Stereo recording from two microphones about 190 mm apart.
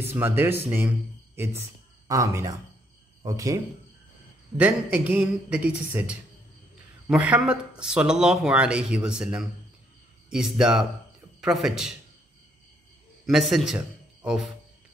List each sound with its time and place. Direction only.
0.0 s speech: 10° right (ahead or behind)
4.6 s speech: 10° right (ahead or behind)
13.3 s a man's voice: centre (ahead or behind)